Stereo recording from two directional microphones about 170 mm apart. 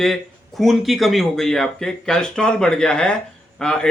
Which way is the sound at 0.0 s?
Centre (ahead or behind).